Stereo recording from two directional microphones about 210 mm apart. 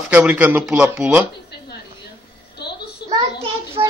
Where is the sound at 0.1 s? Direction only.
5° right (ahead or behind).